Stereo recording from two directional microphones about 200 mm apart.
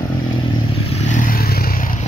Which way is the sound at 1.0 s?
40° left (ahead or behind).